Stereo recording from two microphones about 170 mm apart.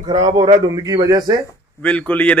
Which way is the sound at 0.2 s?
25° right (ahead or behind).